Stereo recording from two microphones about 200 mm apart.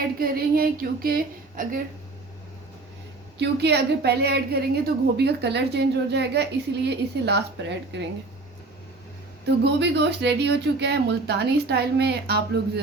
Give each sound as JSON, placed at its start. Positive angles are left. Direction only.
{"t": 0.0, "sound": "a woman's voice", "side_deg": -50}
{"t": 3.3, "sound": "a woman's voice", "side_deg": -55}
{"t": 9.6, "sound": "a woman's voice", "side_deg": -60}